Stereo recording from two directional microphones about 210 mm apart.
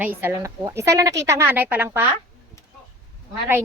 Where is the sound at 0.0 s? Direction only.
10° right (ahead or behind).